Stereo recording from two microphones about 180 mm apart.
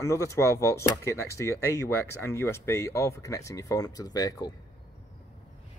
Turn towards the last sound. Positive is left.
turn(degrees=20)  # may be behind; listen again after turning